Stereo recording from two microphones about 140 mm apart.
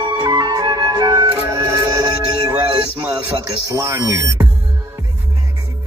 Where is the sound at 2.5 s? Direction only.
10° right (ahead or behind).